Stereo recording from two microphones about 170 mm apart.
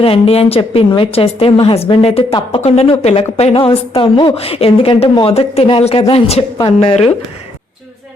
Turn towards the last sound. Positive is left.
turn(degrees=40)  # may be behind; listen again after turning